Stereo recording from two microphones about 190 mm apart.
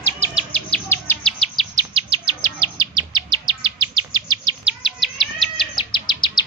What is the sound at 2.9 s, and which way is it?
Bird vocalization, 25° right (ahead or behind).